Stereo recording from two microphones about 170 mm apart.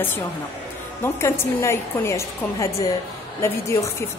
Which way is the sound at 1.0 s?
15° left (ahead or behind).